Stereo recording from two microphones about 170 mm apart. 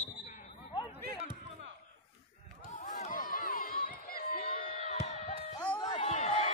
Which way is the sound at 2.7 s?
45° left (ahead or behind).